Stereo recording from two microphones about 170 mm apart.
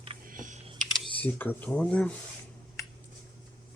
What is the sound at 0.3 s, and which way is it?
Typing, 50° right (ahead or behind).